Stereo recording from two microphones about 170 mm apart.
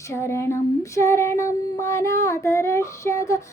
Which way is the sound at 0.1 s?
15° left (ahead or behind).